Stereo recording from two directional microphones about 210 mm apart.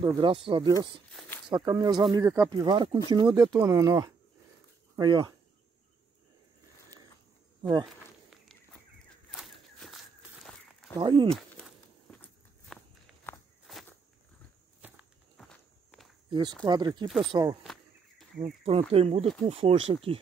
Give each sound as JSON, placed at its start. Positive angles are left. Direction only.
{"t": 0.0, "sound": "speech", "side_deg": -25}
{"t": 7.8, "sound": "walk", "side_deg": 0}
{"t": 9.3, "sound": "a sound", "side_deg": 0}
{"t": 11.0, "sound": "speech", "side_deg": -25}
{"t": 11.2, "sound": "walk", "side_deg": 5}
{"t": 16.3, "sound": "speech", "side_deg": -20}